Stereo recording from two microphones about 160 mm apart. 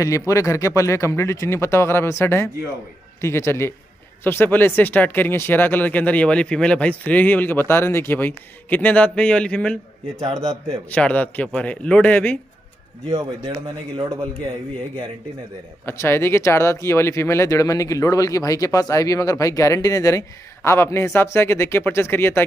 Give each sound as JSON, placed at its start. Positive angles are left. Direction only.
{"t": 0.3, "sound": "speech", "side_deg": 20}
{"t": 10.9, "sound": "speech", "side_deg": 10}
{"t": 13.1, "sound": "speech", "side_deg": -40}
{"t": 15.8, "sound": "speech", "side_deg": 15}